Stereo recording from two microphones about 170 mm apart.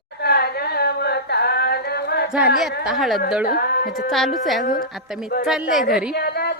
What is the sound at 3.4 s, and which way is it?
Speech, 60° left (ahead or behind).